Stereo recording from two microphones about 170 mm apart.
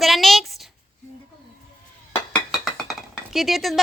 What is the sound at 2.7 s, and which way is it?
Chink, centre (ahead or behind).